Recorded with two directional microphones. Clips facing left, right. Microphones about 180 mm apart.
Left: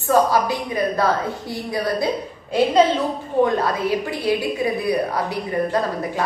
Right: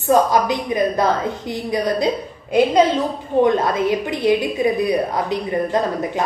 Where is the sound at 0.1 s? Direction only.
20° right (ahead or behind).